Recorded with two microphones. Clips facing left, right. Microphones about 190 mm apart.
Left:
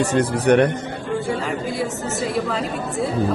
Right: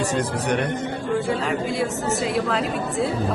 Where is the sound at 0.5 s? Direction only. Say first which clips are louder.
Left 10 dB; 65° left (ahead or behind).